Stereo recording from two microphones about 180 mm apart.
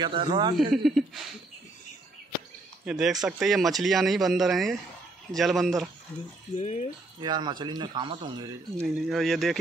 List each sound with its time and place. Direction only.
0.0 s speech: 25° right (ahead or behind)
0.8 s speech: centre (ahead or behind)
2.8 s speech: 5° right (ahead or behind)
6.5 s speech: 40° left (ahead or behind)
7.2 s speech: 25° right (ahead or behind)
8.8 s speech: centre (ahead or behind)